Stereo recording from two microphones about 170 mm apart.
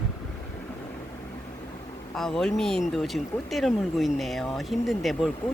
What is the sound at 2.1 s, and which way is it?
Speech, centre (ahead or behind).